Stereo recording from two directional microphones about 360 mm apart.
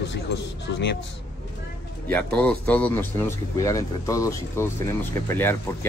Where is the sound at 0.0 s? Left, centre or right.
Left.